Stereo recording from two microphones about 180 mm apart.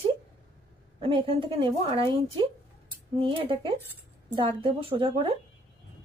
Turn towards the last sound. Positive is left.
turn(degrees=-30)  # may be behind; listen again after turning